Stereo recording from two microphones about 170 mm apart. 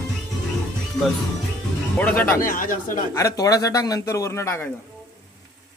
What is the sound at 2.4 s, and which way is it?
Speech, 55° left (ahead or behind).